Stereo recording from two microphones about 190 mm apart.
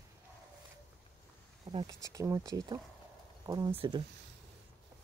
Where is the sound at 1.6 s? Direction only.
20° right (ahead or behind).